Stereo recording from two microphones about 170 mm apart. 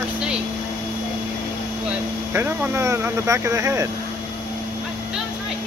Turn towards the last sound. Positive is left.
turn(degrees=-15)  # may be behind; listen again after turning